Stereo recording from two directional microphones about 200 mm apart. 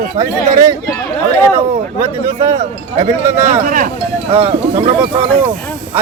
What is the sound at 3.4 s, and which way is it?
Speech, 40° right (ahead or behind).